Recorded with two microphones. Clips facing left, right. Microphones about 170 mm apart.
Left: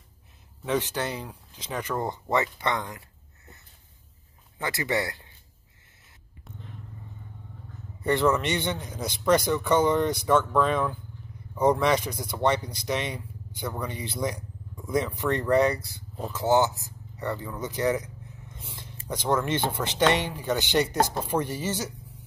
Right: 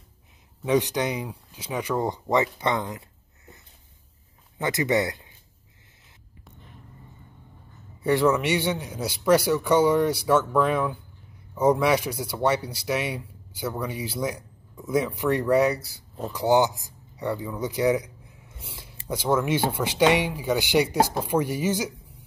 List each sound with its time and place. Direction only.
0.7 s speech: 15° right (ahead or behind)
4.6 s speech: 20° right (ahead or behind)
8.0 s speech: 10° right (ahead or behind)